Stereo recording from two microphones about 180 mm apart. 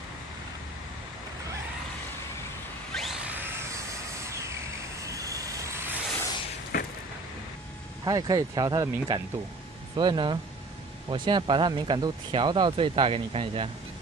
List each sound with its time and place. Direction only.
2.9 s a sound: centre (ahead or behind); by 4.6 s 15° right (ahead or behind)
5.0 s vehicle: 20° right (ahead or behind)
6.7 s vehicle: 55° left (ahead or behind)
8.0 s speech: 20° right (ahead or behind)